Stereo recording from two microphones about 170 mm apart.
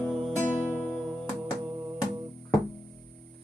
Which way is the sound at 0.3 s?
10° left (ahead or behind).